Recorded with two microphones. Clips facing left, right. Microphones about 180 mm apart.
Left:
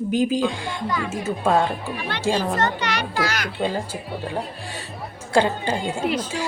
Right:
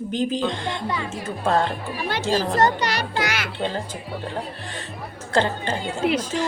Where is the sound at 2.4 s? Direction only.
35° right (ahead or behind).